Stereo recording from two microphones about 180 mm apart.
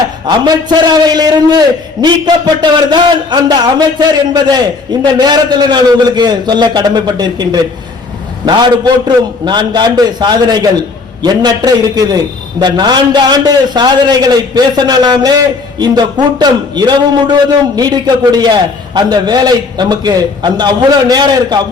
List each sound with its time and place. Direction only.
0.3 s a man's voice: 25° right (ahead or behind)